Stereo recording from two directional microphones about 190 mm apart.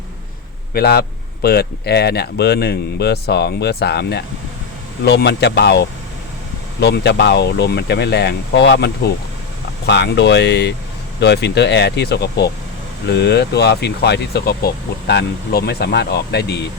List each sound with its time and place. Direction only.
0.7 s speech: 55° left (ahead or behind)